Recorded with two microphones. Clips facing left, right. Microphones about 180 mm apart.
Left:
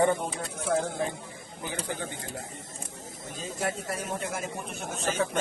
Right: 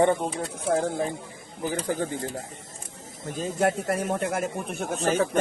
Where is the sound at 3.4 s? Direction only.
55° right (ahead or behind).